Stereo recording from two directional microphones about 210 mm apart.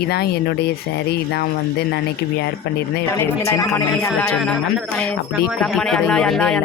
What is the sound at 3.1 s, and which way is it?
Speech, 15° left (ahead or behind).